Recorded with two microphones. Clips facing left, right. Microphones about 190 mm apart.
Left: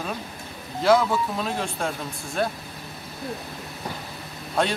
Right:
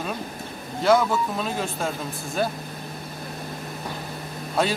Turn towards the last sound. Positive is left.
turn(degrees=-5)  # may be behind; listen again after turning